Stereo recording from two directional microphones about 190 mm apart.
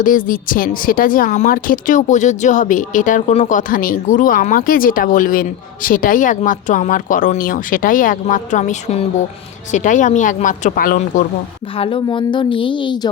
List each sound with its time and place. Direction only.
0.0 s a woman's voice: 45° left (ahead or behind)
11.8 s a woman's voice: 25° left (ahead or behind)